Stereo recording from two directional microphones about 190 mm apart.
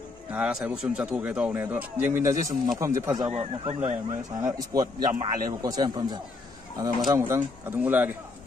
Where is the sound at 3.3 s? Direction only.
30° right (ahead or behind).